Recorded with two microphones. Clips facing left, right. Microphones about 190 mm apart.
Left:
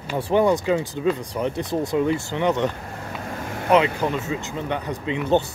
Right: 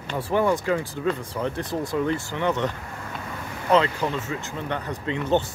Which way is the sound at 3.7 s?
15° left (ahead or behind).